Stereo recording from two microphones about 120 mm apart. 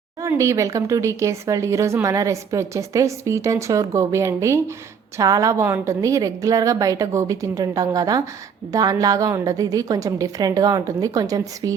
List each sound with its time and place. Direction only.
0.2 s speech: 25° right (ahead or behind)